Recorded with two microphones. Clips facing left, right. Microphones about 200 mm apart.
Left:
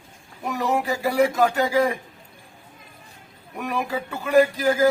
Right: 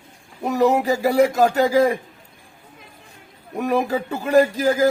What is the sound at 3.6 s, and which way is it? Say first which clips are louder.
Speech: right 6 dB; 40° right (ahead or behind).